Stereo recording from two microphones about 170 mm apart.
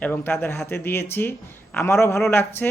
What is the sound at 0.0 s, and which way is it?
Speech, 15° left (ahead or behind).